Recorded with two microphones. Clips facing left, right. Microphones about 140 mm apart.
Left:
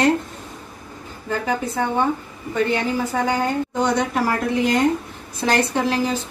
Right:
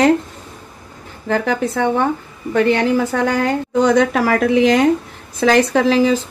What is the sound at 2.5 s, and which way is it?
Speech, 75° right (ahead or behind).